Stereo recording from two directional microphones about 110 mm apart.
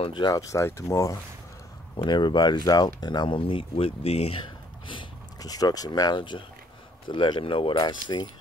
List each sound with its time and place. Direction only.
0.0 s speech: 40° left (ahead or behind)
2.0 s speech: 45° left (ahead or behind); by 4.4 s 65° left (ahead or behind)
4.8 s speech: 40° left (ahead or behind)